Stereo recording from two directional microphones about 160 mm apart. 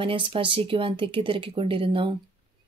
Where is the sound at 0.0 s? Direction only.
35° right (ahead or behind).